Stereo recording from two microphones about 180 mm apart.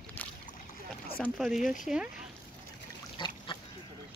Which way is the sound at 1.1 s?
5° left (ahead or behind).